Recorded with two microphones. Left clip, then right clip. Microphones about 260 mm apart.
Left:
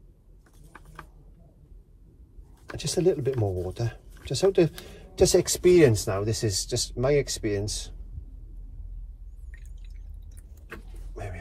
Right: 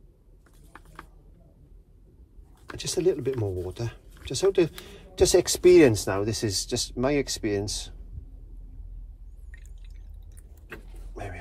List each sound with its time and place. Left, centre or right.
2.6 s speech: centre; by 7.9 s right